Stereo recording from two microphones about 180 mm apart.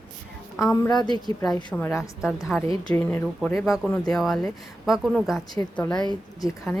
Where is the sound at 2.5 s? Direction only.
Centre (ahead or behind).